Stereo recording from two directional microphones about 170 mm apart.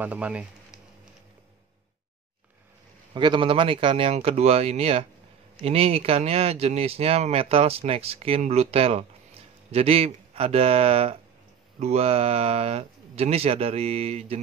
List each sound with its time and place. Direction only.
0.0 s speech: 10° right (ahead or behind)
3.2 s speech: 30° right (ahead or behind)